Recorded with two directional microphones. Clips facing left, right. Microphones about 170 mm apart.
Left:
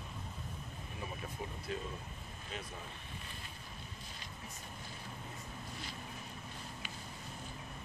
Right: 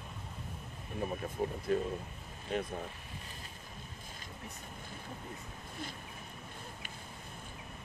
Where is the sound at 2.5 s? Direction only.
55° right (ahead or behind).